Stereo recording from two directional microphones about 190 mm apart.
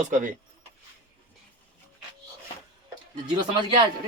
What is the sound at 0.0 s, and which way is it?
Speech, 40° right (ahead or behind).